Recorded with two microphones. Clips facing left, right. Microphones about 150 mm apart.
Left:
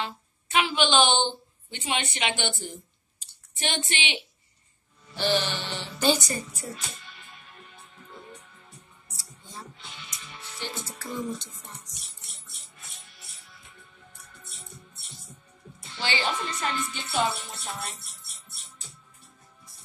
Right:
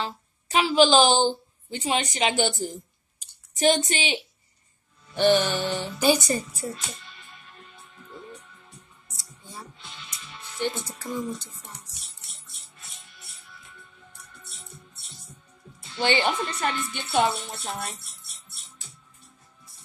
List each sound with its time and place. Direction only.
0.0 s a woman's voice: 35° right (ahead or behind)
5.1 s music: 55° right (ahead or behind)
6.1 s a woman's voice: 30° right (ahead or behind)
9.1 s music: 10° right (ahead or behind)
16.0 s a woman's voice: 55° right (ahead or behind)